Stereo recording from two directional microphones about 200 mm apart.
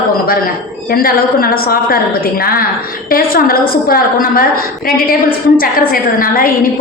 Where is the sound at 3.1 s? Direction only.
50° left (ahead or behind).